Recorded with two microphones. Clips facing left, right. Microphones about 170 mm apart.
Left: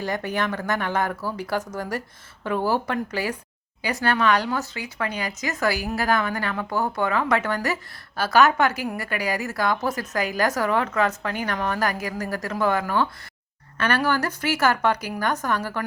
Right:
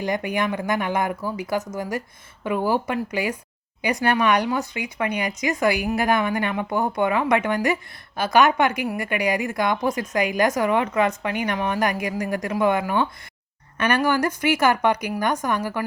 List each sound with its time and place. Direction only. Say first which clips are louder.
0.0 s speech: right 2 dB; 15° right (ahead or behind)